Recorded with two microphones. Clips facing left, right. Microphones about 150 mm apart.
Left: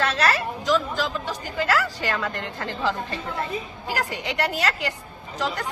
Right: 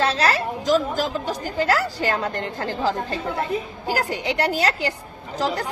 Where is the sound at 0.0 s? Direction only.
35° right (ahead or behind).